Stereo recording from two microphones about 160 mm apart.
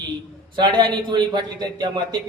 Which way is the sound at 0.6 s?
25° right (ahead or behind).